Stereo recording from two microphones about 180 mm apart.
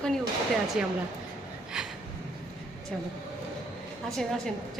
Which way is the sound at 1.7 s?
5° right (ahead or behind).